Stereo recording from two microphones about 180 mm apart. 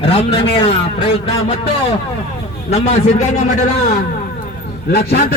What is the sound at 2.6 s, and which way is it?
Speech, 35° left (ahead or behind).